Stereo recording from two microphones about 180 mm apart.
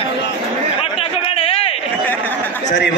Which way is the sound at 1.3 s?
35° left (ahead or behind).